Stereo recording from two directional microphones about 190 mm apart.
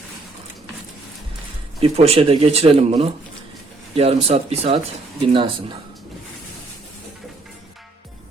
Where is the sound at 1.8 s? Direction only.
30° right (ahead or behind).